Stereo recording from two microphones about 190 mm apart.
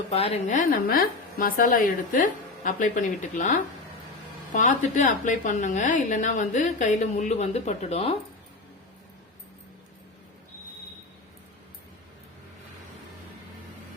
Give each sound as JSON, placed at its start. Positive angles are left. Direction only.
{"t": 0.1, "sound": "a woman's voice", "side_deg": 30}